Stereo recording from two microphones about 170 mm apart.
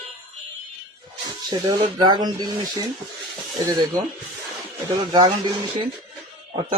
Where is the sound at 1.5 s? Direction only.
25° right (ahead or behind).